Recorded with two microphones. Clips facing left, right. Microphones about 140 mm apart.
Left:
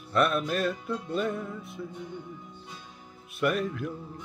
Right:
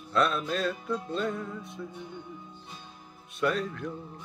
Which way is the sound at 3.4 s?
5° left (ahead or behind).